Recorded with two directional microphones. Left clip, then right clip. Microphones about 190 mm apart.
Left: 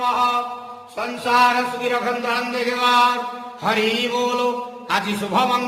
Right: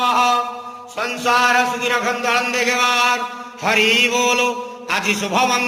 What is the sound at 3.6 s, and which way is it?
Mantra, centre (ahead or behind).